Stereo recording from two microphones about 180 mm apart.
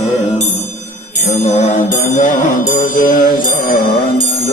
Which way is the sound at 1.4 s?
40° left (ahead or behind).